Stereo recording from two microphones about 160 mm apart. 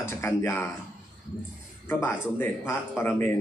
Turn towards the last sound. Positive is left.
turn(degrees=15)  # may be behind; listen again after turning